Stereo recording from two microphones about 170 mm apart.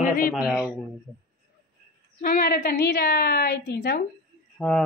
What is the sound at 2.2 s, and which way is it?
A woman's voice, 55° left (ahead or behind).